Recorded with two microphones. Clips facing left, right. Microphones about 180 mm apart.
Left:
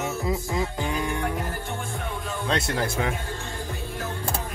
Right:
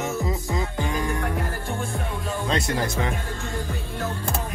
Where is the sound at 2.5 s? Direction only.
5° left (ahead or behind).